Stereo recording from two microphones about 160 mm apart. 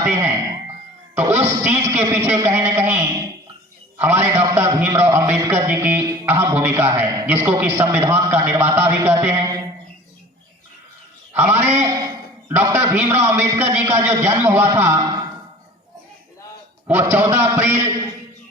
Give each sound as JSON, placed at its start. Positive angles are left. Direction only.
{"t": 0.0, "sound": "a sound", "side_deg": -15}
{"t": 1.1, "sound": "music", "side_deg": -15}
{"t": 1.5, "sound": "a man's voice", "side_deg": -15}
{"t": 11.3, "sound": "a man's voice", "side_deg": -15}
{"t": 16.8, "sound": "a man's voice", "side_deg": -15}